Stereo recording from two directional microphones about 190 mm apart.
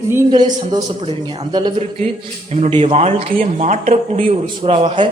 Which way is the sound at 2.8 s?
35° right (ahead or behind).